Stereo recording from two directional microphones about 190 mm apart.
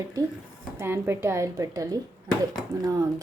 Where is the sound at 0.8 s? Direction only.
15° right (ahead or behind).